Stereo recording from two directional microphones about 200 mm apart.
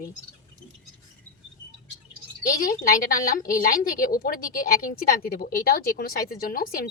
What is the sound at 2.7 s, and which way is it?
Speech, 45° left (ahead or behind).